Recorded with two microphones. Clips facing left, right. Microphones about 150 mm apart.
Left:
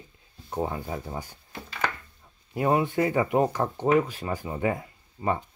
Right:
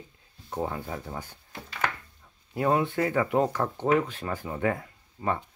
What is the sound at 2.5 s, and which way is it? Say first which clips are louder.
Speech: left 1 dB; 10° left (ahead or behind).